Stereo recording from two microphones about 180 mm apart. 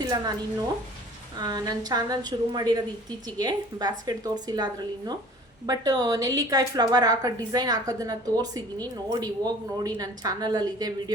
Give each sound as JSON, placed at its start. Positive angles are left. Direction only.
{"t": 0.0, "sound": "speech", "side_deg": -20}
{"t": 1.4, "sound": "a woman's voice", "side_deg": -20}